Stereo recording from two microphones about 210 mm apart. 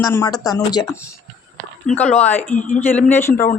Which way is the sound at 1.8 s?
5° left (ahead or behind).